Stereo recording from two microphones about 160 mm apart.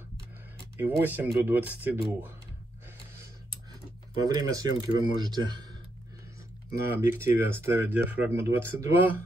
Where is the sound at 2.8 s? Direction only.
20° right (ahead or behind).